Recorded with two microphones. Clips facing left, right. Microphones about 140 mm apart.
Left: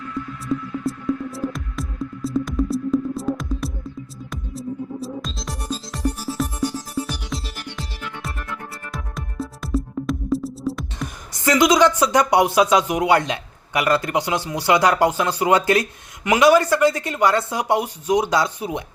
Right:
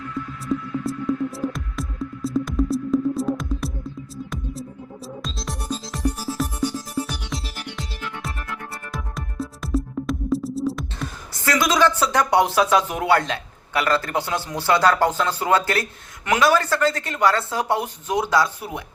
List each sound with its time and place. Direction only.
0.4 s music: centre (ahead or behind)
11.4 s speech: 20° left (ahead or behind)